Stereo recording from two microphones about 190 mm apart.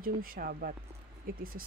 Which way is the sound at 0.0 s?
50° right (ahead or behind).